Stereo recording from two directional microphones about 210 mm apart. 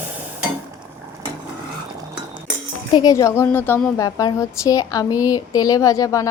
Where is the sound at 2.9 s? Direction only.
20° left (ahead or behind).